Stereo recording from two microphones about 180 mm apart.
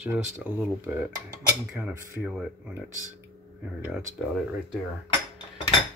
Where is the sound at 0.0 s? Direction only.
10° right (ahead or behind).